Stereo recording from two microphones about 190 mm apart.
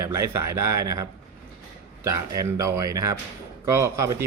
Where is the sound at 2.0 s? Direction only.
15° right (ahead or behind).